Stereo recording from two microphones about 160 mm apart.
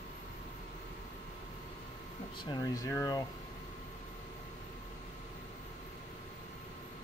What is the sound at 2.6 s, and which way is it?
Speech, 20° left (ahead or behind).